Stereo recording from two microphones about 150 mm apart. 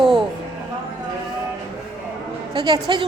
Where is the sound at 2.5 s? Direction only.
25° right (ahead or behind).